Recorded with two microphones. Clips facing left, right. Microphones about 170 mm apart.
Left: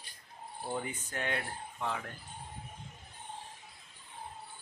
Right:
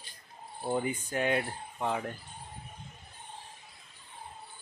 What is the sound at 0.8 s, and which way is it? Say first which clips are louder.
Speech: right 7 dB; 10° right (ahead or behind).